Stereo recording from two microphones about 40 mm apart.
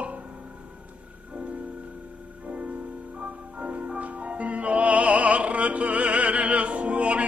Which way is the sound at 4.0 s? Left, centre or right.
Right.